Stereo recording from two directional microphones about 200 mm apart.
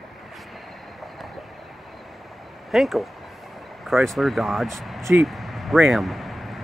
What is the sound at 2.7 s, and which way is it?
Speech, centre (ahead or behind).